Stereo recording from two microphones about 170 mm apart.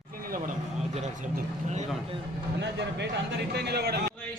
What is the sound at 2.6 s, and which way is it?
A man's voice, 90° right.